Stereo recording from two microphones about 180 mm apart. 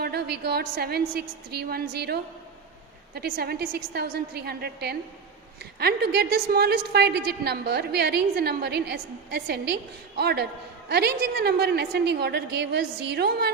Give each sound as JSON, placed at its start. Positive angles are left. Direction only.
{"t": 0.0, "sound": "a woman's voice", "side_deg": -65}